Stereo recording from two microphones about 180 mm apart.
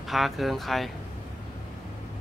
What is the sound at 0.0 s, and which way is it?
Speech, centre (ahead or behind).